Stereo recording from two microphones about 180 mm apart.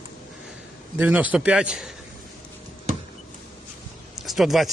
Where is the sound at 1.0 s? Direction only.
10° right (ahead or behind).